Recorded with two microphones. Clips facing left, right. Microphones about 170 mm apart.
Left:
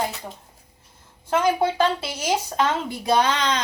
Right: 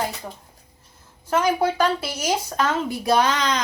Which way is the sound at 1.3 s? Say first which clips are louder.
Even; 25° left (ahead or behind).